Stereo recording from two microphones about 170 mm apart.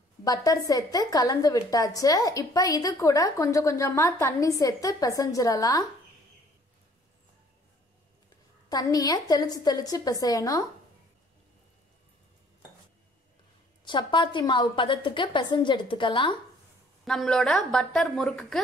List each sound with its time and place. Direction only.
0.2 s a woman's voice: 20° left (ahead or behind)
8.6 s a woman's voice: 20° left (ahead or behind)
13.8 s a woman's voice: 30° left (ahead or behind)
17.0 s a woman's voice: 5° left (ahead or behind)